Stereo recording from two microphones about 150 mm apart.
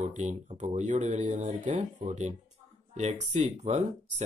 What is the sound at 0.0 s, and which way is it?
Speech, 55° right (ahead or behind).